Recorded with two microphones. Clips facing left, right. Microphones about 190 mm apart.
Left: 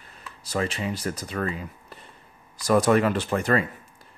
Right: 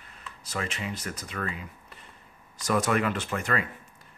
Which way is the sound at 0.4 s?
35° left (ahead or behind).